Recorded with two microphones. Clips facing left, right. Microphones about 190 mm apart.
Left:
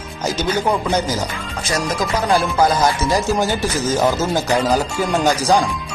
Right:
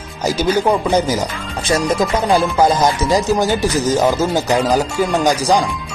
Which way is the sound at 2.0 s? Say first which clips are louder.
Right 3 dB; 25° right (ahead or behind).